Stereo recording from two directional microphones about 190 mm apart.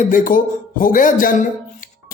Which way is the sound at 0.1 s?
45° left (ahead or behind).